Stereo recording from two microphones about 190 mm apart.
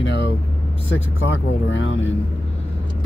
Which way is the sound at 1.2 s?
80° left.